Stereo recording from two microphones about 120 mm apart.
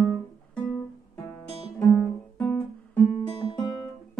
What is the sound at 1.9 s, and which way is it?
Guitar, 5° left (ahead or behind).